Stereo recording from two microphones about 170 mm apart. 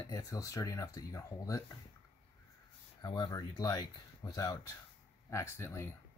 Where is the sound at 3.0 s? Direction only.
25° left (ahead or behind).